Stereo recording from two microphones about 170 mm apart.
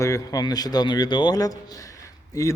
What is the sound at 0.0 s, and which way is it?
A man's voice, 20° left (ahead or behind).